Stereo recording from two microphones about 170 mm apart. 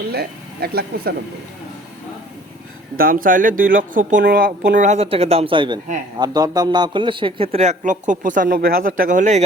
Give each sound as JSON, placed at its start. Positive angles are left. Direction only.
{"t": 0.1, "sound": "speech", "side_deg": -65}
{"t": 3.0, "sound": "a woman's voice", "side_deg": -55}
{"t": 4.8, "sound": "a man's voice", "side_deg": -40}